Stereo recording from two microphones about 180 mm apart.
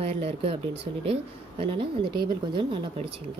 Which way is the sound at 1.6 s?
30° right (ahead or behind).